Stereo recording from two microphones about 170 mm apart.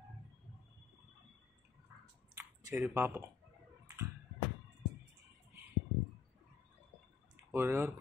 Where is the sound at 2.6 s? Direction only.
15° right (ahead or behind).